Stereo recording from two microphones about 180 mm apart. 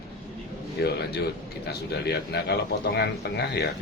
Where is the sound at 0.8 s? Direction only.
65° left (ahead or behind).